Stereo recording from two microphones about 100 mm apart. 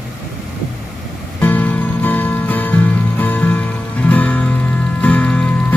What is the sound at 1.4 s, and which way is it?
Music, 15° left (ahead or behind).